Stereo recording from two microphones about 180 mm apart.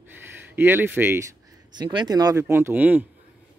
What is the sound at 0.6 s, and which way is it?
Speech, 10° right (ahead or behind).